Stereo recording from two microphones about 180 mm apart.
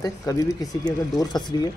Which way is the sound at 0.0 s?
20° left (ahead or behind).